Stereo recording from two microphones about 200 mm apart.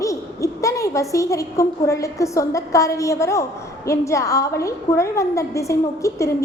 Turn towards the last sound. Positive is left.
turn(degrees=15)  # may be behind; listen again after turning